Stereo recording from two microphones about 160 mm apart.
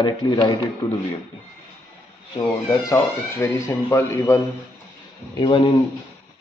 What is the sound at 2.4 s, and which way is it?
A man's voice, 20° left (ahead or behind).